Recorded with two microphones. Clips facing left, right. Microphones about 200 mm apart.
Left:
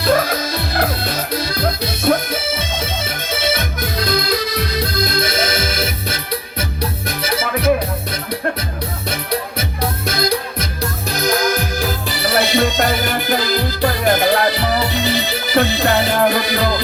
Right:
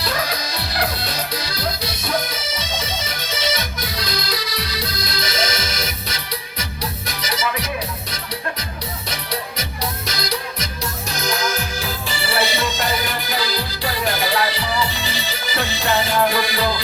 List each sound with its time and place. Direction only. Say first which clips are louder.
0.0 s music: left 8 dB; 50° left (ahead or behind)